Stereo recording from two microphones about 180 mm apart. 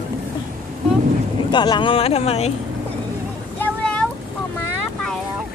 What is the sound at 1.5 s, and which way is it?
Speech, 25° left (ahead or behind).